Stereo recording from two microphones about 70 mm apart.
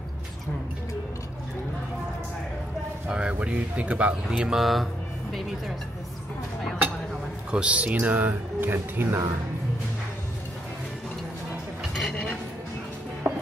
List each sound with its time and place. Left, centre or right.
3.1 s speech: centre
7.5 s speech: centre
11.9 s a sound: centre
13.2 s music: right